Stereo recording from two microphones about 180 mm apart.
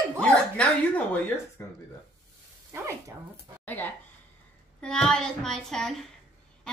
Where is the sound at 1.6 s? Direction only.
15° left (ahead or behind).